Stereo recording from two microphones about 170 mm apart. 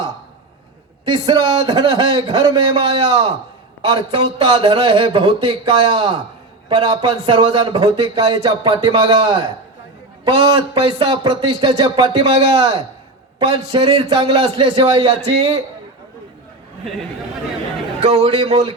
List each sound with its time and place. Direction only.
1.0 s a man's voice: 25° right (ahead or behind)
18.0 s a man's voice: 40° right (ahead or behind)